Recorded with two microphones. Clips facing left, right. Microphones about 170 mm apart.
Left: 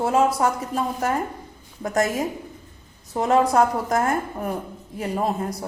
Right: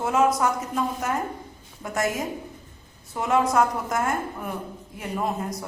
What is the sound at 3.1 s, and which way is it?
A woman's voice, 35° left (ahead or behind).